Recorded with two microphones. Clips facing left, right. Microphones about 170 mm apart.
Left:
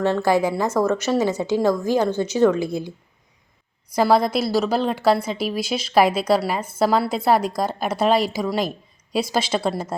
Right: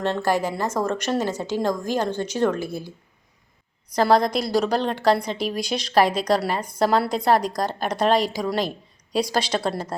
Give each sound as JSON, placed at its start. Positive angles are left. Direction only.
{"t": 0.3, "sound": "a woman's voice", "side_deg": 10}